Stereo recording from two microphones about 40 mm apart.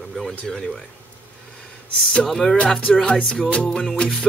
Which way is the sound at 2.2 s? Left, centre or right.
Centre.